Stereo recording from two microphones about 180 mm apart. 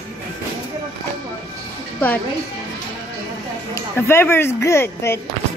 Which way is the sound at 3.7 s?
15° left (ahead or behind).